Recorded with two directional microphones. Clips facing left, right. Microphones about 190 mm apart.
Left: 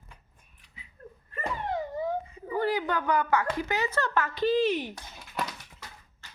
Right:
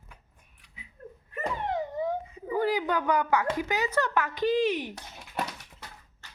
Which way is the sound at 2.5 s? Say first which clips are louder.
Right 1 dB; 15° right (ahead or behind).